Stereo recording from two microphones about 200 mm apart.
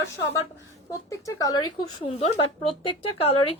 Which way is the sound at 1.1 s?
15° left (ahead or behind).